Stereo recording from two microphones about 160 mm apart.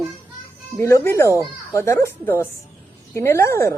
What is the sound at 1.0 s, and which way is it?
Speech, 15° left (ahead or behind).